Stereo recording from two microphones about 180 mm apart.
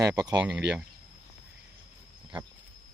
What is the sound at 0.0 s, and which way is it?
Speech, 20° right (ahead or behind).